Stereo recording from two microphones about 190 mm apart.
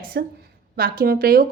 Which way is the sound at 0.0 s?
55° right (ahead or behind).